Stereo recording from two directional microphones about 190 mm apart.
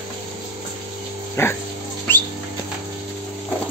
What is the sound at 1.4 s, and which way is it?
Dog, 10° left (ahead or behind).